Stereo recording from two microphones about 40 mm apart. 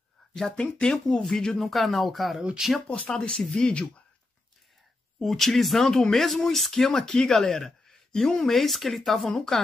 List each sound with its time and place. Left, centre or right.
0.3 s speech: centre
1.6 s speech: centre
3.1 s speech: centre
5.2 s speech: centre